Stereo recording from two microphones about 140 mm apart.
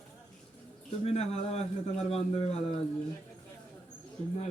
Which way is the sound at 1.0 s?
50° left (ahead or behind).